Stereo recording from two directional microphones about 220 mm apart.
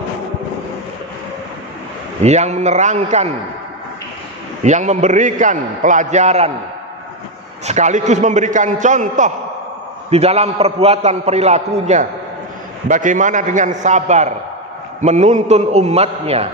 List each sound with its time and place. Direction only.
2.2 s a man's voice: 30° right (ahead or behind)
4.6 s a man's voice: 35° right (ahead or behind)
7.6 s a man's voice: 30° right (ahead or behind)